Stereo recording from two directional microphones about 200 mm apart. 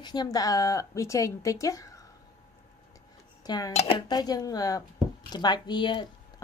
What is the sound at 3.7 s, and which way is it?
Speech, 30° left (ahead or behind).